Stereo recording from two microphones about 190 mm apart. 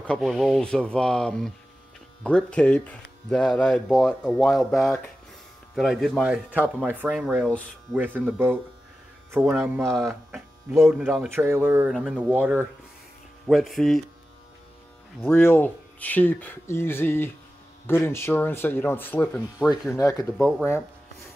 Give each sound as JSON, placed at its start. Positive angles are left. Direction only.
{"t": 0.0, "sound": "speech", "side_deg": 5}
{"t": 4.7, "sound": "speech", "side_deg": 15}
{"t": 5.8, "sound": "speech", "side_deg": 0}
{"t": 15.2, "sound": "speech", "side_deg": 10}
{"t": 20.3, "sound": "speech", "side_deg": 0}